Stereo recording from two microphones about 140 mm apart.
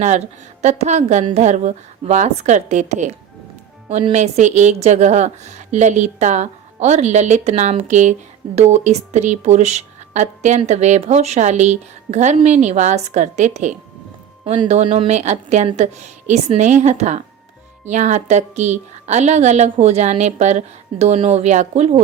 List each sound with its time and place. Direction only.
0.6 s speech: 55° right (ahead or behind)
14.4 s a woman's voice: 40° right (ahead or behind)